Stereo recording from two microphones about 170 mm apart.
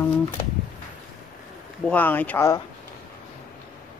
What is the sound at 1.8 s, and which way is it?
Speech, 10° left (ahead or behind).